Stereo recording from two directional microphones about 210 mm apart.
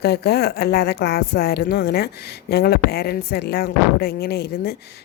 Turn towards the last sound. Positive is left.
turn(degrees=50)  # may be behind; listen again after turning